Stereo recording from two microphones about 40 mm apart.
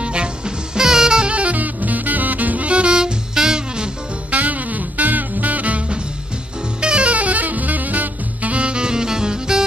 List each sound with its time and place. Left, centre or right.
0.0 s music: right
0.7 s saxophone: centre
4.3 s music: right
6.8 s saxophone: right